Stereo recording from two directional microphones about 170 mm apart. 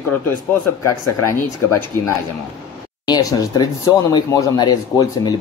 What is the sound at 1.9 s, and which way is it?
Speech, 10° left (ahead or behind).